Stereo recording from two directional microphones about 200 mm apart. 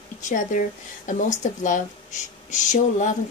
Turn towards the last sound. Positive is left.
turn(degrees=35)  # may be behind; listen again after turning